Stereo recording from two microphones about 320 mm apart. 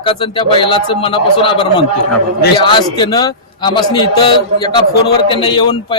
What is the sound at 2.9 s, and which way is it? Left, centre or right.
Speech, centre.